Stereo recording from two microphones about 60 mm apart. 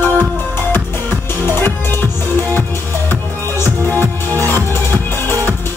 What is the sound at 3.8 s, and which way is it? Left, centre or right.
Music, left.